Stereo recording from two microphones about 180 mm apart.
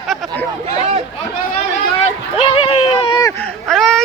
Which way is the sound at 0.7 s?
35° right (ahead or behind).